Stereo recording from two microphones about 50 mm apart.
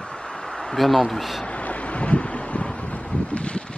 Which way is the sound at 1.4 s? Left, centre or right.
Left.